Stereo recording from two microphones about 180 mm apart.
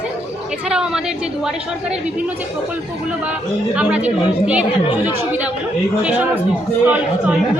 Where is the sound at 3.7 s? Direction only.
5° right (ahead or behind).